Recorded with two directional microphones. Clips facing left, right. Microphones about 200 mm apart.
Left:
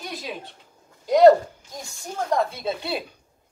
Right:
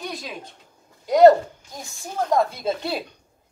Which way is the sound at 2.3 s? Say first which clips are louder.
Right 2 dB; centre (ahead or behind).